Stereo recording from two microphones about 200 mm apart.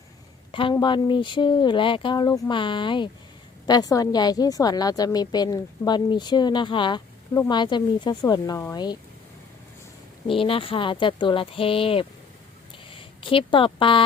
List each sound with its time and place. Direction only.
0.5 s a woman's voice: 25° left (ahead or behind)
10.2 s a woman's voice: 25° left (ahead or behind)